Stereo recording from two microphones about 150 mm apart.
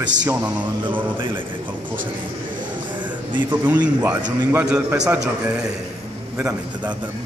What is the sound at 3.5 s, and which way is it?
A man's voice, 10° right (ahead or behind).